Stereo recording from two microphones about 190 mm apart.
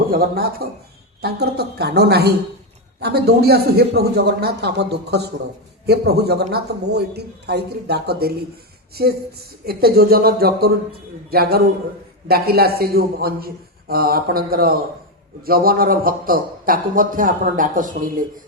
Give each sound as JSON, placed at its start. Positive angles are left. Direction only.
{"t": 0.1, "sound": "a man's voice", "side_deg": -50}